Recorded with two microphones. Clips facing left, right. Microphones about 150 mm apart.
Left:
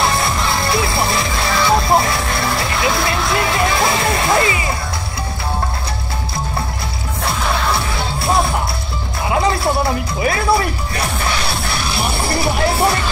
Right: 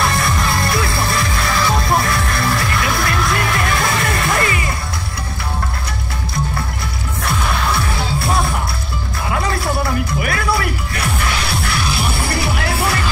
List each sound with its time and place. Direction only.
0.0 s music: 25° left (ahead or behind)
9.3 s music: 25° left (ahead or behind)
12.3 s music: 30° left (ahead or behind)